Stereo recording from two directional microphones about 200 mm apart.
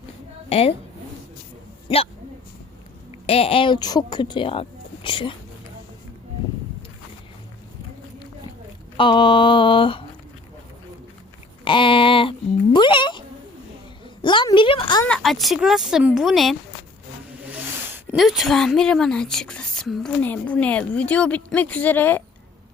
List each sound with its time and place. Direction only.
0.5 s a woman's voice: 30° left (ahead or behind)
3.2 s a woman's voice: 30° left (ahead or behind)
9.0 s a woman's voice: 25° left (ahead or behind)
11.6 s a woman's voice: 25° left (ahead or behind)
15.0 s speech: 5° left (ahead or behind)